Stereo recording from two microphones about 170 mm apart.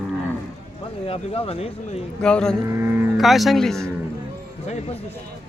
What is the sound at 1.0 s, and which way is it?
Speech, 35° left (ahead or behind).